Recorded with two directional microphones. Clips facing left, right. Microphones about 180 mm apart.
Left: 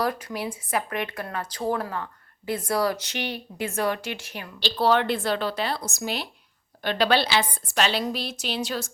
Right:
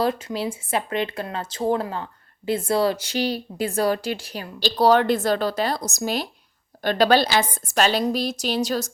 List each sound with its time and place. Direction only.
0.0 s a woman's voice: 25° right (ahead or behind); by 8.9 s 40° right (ahead or behind)